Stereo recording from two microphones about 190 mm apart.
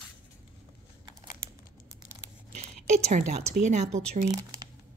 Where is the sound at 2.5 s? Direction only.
40° right (ahead or behind).